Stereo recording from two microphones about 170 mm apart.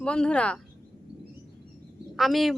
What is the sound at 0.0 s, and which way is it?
Speech, 5° left (ahead or behind).